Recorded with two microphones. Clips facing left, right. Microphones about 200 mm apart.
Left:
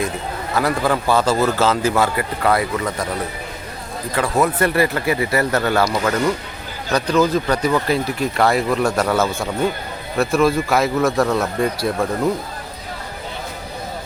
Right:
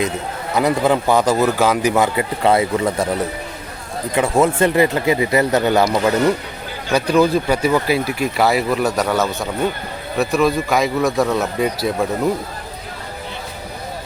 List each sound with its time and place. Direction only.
0.5 s a man's voice: 20° right (ahead or behind)
4.1 s a man's voice: 25° right (ahead or behind); by 12.0 s centre (ahead or behind)